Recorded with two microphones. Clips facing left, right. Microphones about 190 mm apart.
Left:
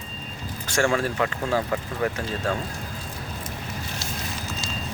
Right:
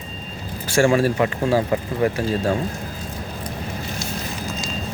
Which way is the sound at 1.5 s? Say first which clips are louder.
Right 5 dB; 30° right (ahead or behind).